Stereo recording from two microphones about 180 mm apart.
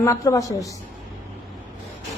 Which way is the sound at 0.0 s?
15° left (ahead or behind).